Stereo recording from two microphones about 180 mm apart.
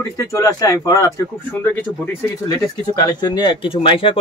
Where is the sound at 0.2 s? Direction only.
20° left (ahead or behind).